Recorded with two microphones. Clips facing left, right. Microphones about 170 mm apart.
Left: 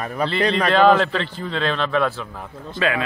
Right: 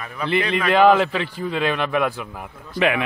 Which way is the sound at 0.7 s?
15° right (ahead or behind).